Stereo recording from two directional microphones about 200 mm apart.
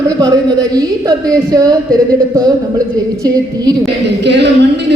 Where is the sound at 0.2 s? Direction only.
20° right (ahead or behind).